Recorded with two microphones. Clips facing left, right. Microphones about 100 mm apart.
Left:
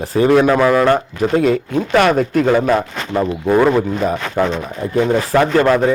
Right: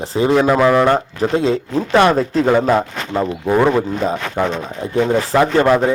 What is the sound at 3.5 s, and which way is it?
Speech, 5° right (ahead or behind).